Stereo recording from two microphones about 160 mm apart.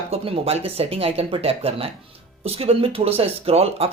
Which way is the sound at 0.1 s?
40° right (ahead or behind).